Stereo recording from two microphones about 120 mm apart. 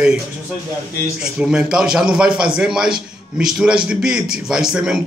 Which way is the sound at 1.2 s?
5° right (ahead or behind).